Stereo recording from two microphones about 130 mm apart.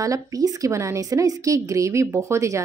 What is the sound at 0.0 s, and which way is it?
A woman's voice, 25° right (ahead or behind).